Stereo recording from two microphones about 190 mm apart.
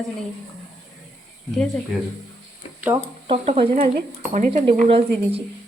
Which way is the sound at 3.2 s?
30° right (ahead or behind).